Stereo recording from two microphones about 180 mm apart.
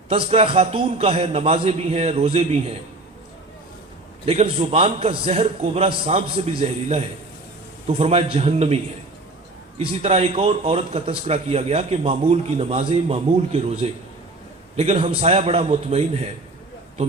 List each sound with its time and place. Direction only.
0.1 s a man's voice: 35° right (ahead or behind)
4.3 s a man's voice: 35° right (ahead or behind)